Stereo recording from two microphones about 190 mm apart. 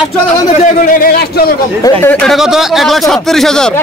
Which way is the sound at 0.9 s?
50° left (ahead or behind).